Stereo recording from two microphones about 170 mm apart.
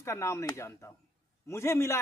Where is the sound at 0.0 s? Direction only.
15° left (ahead or behind).